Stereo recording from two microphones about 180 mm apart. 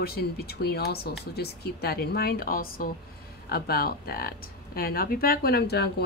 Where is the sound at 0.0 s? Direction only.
60° left (ahead or behind).